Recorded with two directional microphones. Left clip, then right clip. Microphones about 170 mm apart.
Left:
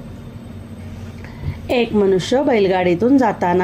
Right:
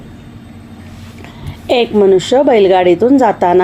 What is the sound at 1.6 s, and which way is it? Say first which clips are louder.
A woman's voice: right 6 dB; 30° right (ahead or behind).